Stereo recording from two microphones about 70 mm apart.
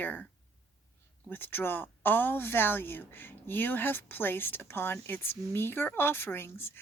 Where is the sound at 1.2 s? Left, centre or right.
Left.